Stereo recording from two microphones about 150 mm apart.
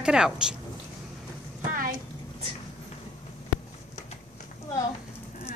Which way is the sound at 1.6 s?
65° right (ahead or behind).